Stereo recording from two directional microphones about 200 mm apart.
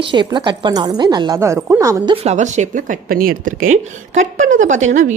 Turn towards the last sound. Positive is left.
turn(degrees=-35)  # may be behind; listen again after turning